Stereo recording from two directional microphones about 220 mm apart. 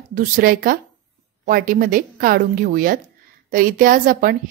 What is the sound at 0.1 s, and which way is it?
Speech, 40° right (ahead or behind).